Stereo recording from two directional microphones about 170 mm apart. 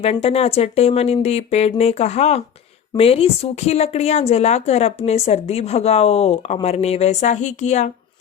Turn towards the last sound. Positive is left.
turn(degrees=45)  # may be behind; listen again after turning